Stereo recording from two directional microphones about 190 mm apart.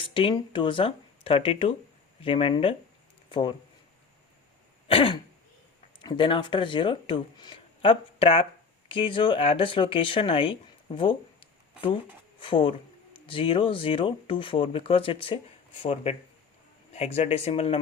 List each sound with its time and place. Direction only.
0.0 s speech: 25° left (ahead or behind)
4.9 s speech: 30° left (ahead or behind)